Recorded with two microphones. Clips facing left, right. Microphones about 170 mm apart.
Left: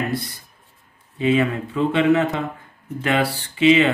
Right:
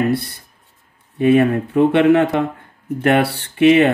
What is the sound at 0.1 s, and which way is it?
Speech, 65° right (ahead or behind).